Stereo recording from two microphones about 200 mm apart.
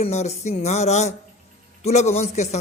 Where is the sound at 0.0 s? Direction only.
35° left (ahead or behind).